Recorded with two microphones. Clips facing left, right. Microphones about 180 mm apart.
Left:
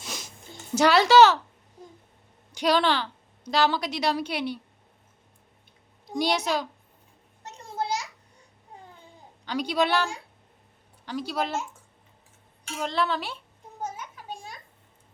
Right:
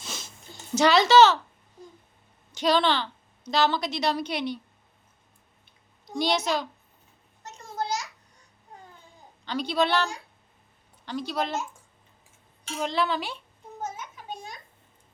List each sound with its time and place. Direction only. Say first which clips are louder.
0.0 s a sound: left 1 dB; 15° left (ahead or behind)
0.7 s speech: even; 10° left (ahead or behind)
2.5 s a woman's voice: even; 10° left (ahead or behind)
6.1 s speech: even; 10° left (ahead or behind)
7.5 s a sound: left 1 dB; 30° left (ahead or behind)
9.4 s speech: even; 10° left (ahead or behind)
12.8 s a woman's voice: even; centre (ahead or behind)
13.8 s children playing: left 1 dB; 10° left (ahead or behind)